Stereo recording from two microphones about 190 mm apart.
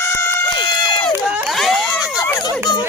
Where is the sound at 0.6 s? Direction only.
25° left (ahead or behind).